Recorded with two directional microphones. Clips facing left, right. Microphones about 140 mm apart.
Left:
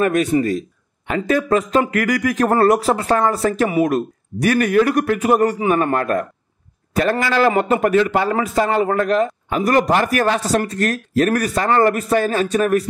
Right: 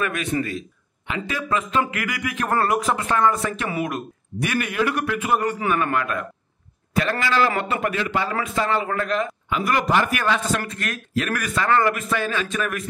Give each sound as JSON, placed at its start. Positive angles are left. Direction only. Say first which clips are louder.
{"t": 0.0, "sound": "a man's voice", "louder": "left 8 dB", "side_deg": 40}